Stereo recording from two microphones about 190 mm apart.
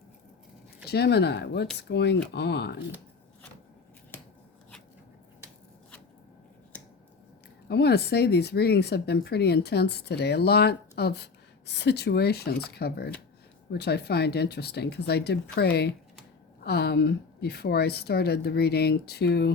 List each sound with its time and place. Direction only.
0.9 s speech: 60° left (ahead or behind)
4.1 s a sound: 10° left (ahead or behind)
6.7 s finger snapping: 10° left (ahead or behind)
7.7 s speech: 60° left (ahead or behind)